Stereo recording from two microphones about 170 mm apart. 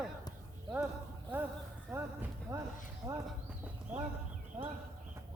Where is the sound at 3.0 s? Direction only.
20° right (ahead or behind).